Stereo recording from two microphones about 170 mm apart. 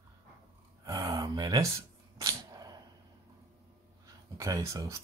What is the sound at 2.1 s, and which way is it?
Dog, 20° right (ahead or behind).